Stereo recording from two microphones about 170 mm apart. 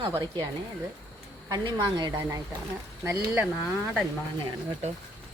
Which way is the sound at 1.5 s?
25° right (ahead or behind).